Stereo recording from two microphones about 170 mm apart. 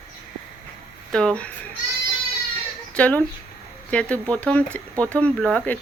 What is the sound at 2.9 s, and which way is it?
Speech, 10° left (ahead or behind).